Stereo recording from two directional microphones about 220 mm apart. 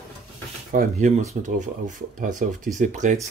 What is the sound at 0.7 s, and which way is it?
Speech, 35° right (ahead or behind).